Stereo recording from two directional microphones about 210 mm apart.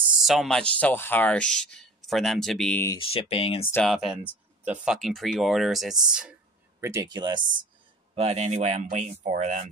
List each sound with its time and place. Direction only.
0.2 s speech: centre (ahead or behind)
3.0 s speech: 25° left (ahead or behind)
3.7 s speech: centre (ahead or behind)
6.8 s speech: 15° right (ahead or behind); by 9.7 s 35° right (ahead or behind)